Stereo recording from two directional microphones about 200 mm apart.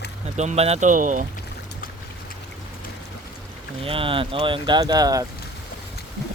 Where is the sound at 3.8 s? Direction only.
25° right (ahead or behind).